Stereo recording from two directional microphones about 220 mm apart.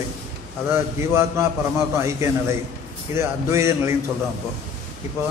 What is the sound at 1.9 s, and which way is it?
A man's voice, 10° right (ahead or behind).